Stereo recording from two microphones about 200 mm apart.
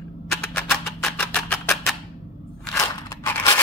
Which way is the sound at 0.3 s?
5° left (ahead or behind).